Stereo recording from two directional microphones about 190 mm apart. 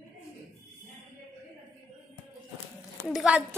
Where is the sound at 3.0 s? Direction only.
5° right (ahead or behind).